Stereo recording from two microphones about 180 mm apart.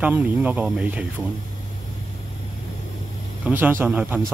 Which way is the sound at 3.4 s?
10° right (ahead or behind).